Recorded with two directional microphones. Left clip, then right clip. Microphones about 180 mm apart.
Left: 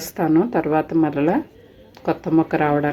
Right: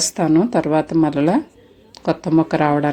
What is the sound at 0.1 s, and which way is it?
Speech, 35° right (ahead or behind).